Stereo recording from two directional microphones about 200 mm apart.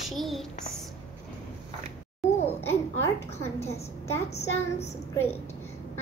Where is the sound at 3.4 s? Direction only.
15° left (ahead or behind).